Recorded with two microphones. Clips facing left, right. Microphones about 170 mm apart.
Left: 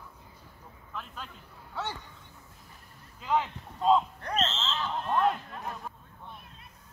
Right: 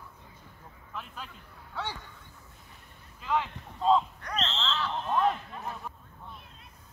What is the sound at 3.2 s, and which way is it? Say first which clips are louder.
Speech: left 2 dB; 20° left (ahead or behind).